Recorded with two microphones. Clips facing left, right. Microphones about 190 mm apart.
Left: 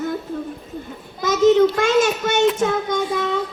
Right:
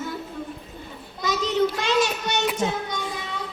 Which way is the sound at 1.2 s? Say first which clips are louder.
Left 9 dB; 50° left (ahead or behind).